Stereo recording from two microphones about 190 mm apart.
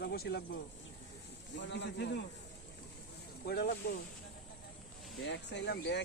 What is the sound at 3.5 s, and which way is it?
Speech, 55° left (ahead or behind).